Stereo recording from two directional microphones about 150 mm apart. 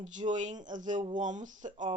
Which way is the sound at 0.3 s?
55° right (ahead or behind).